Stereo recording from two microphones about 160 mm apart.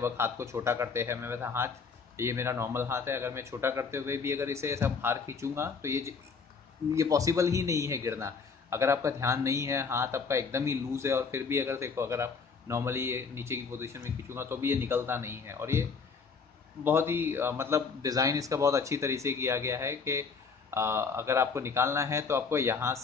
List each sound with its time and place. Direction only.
0.0 s a man's voice: 15° right (ahead or behind)